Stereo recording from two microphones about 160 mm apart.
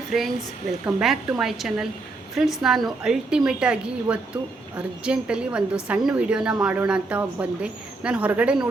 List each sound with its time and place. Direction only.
0.1 s a woman's voice: centre (ahead or behind)